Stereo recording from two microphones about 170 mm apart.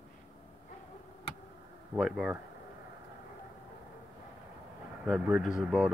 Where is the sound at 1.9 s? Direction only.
5° right (ahead or behind).